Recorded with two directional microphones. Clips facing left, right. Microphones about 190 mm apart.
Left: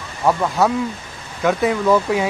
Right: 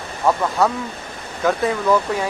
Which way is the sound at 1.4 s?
5° left (ahead or behind).